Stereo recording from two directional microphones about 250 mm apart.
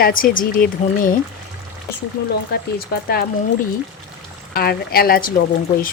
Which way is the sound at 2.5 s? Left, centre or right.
Left.